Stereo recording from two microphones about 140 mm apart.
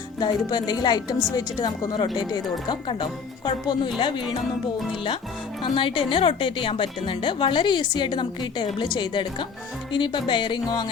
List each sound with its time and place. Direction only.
0.2 s a woman's voice: 30° left (ahead or behind)
5.6 s speech: 35° left (ahead or behind)